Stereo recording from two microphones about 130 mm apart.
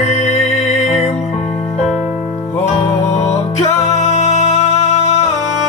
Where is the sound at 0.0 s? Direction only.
60° left (ahead or behind).